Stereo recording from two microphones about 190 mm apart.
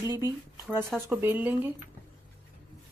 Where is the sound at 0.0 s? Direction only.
15° right (ahead or behind).